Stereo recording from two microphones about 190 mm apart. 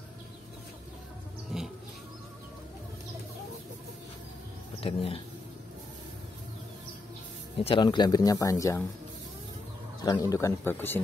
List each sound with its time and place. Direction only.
1.5 s a sound: 5° right (ahead or behind)
4.7 s speech: 30° left (ahead or behind)
7.5 s speech: 25° left (ahead or behind)
10.3 s speech: 15° left (ahead or behind)